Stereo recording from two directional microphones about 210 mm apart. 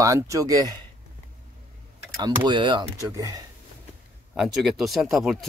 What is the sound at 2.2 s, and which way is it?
Speech, 20° right (ahead or behind).